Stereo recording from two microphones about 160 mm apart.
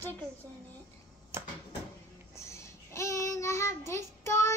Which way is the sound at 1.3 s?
15° right (ahead or behind).